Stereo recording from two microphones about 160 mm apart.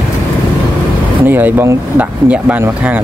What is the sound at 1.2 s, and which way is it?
Speech, 15° right (ahead or behind).